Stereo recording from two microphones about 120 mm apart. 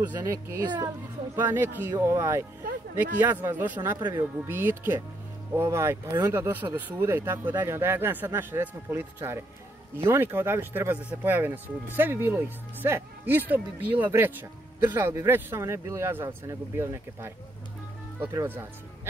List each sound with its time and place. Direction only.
0.2 s speech: 25° right (ahead or behind)